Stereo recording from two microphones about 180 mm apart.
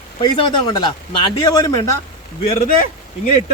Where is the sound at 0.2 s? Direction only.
25° left (ahead or behind).